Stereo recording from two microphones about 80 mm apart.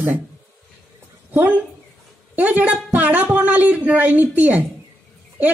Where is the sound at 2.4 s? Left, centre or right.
Right.